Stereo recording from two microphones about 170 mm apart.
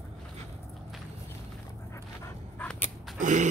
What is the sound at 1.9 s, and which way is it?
Dog, 15° left (ahead or behind).